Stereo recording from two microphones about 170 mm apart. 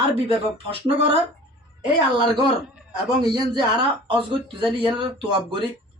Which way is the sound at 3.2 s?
25° right (ahead or behind).